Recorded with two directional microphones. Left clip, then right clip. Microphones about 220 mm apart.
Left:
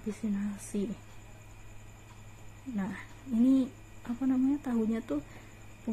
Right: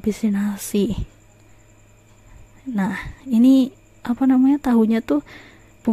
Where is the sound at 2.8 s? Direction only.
45° right (ahead or behind).